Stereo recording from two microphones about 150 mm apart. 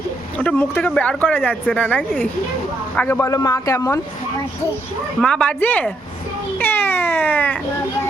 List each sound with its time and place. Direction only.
0.3 s speech: 10° left (ahead or behind)
3.1 s a man's voice: 20° left (ahead or behind)
5.2 s speech: 5° left (ahead or behind)